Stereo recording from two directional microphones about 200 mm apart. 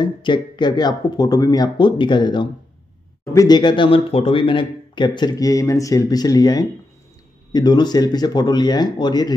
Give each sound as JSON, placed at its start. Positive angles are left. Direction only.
{"t": 0.0, "sound": "speech", "side_deg": 25}